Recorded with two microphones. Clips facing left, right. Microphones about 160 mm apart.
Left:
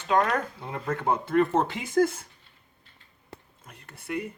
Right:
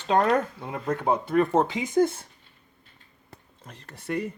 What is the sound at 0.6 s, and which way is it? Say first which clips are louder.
Speech: right 2 dB; 15° right (ahead or behind).